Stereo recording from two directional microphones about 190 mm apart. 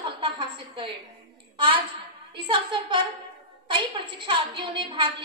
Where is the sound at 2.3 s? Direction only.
25° right (ahead or behind).